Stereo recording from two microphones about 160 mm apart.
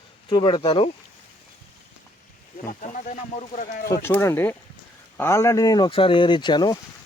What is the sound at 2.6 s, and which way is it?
Speech, 55° left (ahead or behind).